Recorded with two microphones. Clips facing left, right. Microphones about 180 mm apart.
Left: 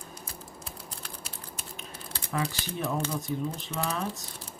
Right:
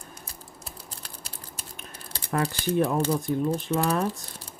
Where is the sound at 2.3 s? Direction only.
55° right (ahead or behind).